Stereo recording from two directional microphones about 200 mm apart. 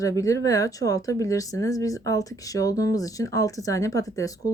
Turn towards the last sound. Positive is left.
turn(degrees=15)  # may be behind; listen again after turning